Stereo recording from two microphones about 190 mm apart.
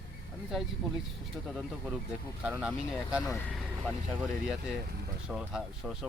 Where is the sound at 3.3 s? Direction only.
10° left (ahead or behind).